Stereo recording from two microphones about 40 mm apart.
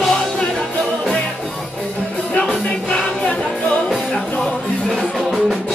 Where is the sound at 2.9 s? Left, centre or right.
Centre; by 4.9 s left.